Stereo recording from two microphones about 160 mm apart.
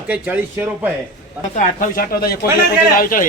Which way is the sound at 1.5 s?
60° left (ahead or behind).